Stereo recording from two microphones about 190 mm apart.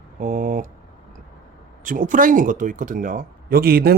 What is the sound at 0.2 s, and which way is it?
Speech, 45° right (ahead or behind).